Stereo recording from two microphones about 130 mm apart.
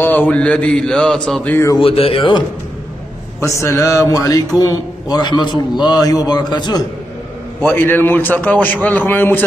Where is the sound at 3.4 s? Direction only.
25° left (ahead or behind).